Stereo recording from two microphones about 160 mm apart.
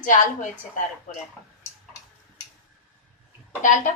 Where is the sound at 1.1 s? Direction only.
55° left (ahead or behind).